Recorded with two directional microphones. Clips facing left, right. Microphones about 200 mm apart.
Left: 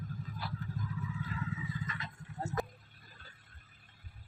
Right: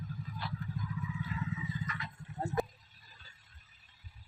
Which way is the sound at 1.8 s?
25° left (ahead or behind).